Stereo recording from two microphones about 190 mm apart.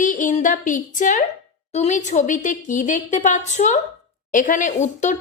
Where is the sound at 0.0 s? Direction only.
45° left (ahead or behind).